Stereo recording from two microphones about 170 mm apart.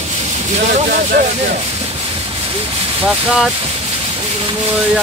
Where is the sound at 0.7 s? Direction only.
55° right (ahead or behind).